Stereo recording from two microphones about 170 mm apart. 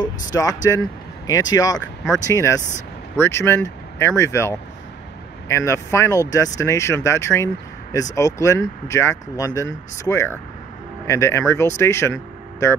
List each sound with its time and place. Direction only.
0.0 s speech: 20° left (ahead or behind)